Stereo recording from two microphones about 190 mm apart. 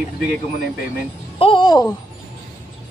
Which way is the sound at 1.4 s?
25° left (ahead or behind).